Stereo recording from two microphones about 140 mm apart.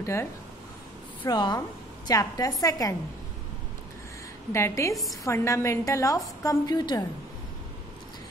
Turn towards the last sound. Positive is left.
turn(degrees=30)  # may be behind; listen again after turning